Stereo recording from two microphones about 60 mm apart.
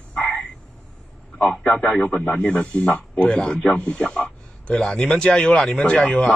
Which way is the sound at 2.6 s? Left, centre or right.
Centre.